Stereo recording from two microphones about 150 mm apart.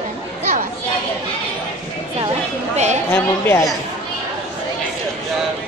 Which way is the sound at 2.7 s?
50° right (ahead or behind).